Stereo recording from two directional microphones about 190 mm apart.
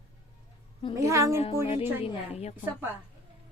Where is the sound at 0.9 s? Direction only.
15° right (ahead or behind).